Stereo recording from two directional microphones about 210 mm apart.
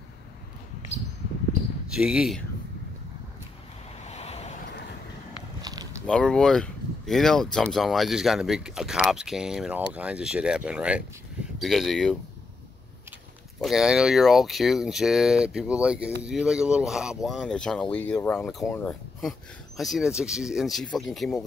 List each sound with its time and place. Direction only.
1.9 s speech: 5° right (ahead or behind)
4.0 s vehicle: 30° left (ahead or behind)
5.6 s a sound: 20° right (ahead or behind)
6.0 s speech: 5° left (ahead or behind)
13.6 s speech: centre (ahead or behind)